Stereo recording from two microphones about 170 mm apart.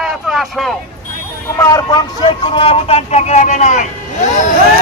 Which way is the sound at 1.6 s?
20° left (ahead or behind).